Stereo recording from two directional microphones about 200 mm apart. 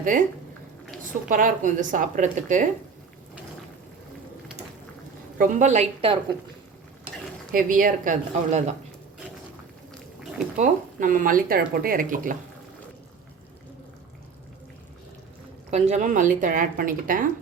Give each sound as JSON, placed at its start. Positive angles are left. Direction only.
{"t": 0.0, "sound": "speech", "side_deg": -40}
{"t": 1.3, "sound": "a woman's voice", "side_deg": -40}
{"t": 5.4, "sound": "a woman's voice", "side_deg": -35}
{"t": 7.5, "sound": "a woman's voice", "side_deg": -45}
{"t": 10.6, "sound": "speech", "side_deg": -40}
{"t": 15.7, "sound": "a woman's voice", "side_deg": -35}